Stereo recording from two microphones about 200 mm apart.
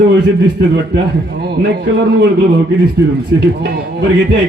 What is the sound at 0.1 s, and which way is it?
A man's voice, 55° right (ahead or behind).